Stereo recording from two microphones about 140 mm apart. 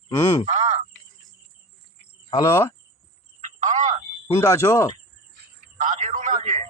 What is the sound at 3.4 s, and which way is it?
Telephone, 60° right (ahead or behind).